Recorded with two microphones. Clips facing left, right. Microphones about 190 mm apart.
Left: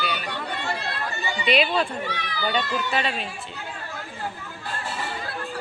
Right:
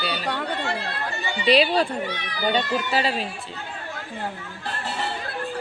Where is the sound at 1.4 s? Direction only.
35° right (ahead or behind).